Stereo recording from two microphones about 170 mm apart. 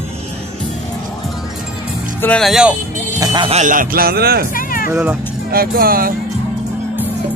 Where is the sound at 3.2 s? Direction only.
25° right (ahead or behind).